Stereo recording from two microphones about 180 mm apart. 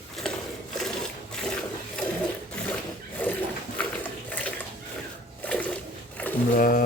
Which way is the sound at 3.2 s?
10° left (ahead or behind).